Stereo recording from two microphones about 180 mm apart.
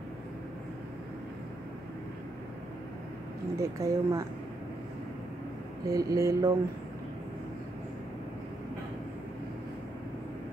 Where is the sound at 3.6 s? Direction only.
15° right (ahead or behind).